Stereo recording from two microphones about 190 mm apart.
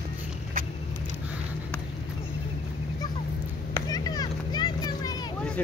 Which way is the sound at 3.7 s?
20° left (ahead or behind).